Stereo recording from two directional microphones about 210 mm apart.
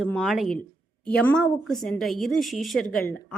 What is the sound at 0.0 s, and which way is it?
A woman's voice, centre (ahead or behind).